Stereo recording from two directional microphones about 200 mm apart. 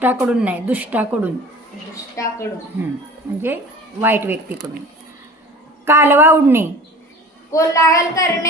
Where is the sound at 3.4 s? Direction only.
10° right (ahead or behind).